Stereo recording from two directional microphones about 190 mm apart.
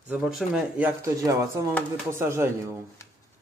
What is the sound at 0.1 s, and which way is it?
Speech, 5° right (ahead or behind).